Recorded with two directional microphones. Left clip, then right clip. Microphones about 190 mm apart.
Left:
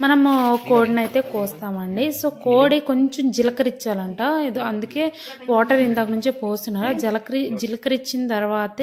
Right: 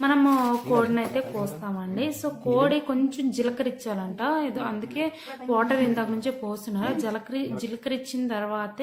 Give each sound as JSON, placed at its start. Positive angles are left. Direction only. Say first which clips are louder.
{"t": 0.0, "sound": "a woman's voice", "louder": "left 5 dB", "side_deg": 30}